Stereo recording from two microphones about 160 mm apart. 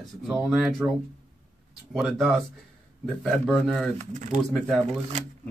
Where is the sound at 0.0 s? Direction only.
Centre (ahead or behind).